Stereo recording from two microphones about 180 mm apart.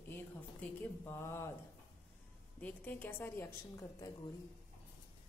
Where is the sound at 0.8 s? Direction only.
15° left (ahead or behind).